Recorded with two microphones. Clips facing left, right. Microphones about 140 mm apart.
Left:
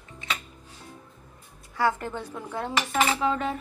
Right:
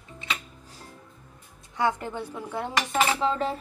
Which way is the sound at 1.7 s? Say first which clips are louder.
Left 1 dB; 15° right (ahead or behind).